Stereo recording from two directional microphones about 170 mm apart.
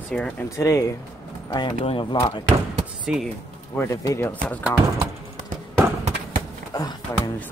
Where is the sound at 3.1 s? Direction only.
5° right (ahead or behind).